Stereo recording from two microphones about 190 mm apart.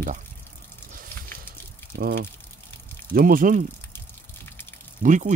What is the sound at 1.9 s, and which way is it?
Speech, 55° right (ahead or behind).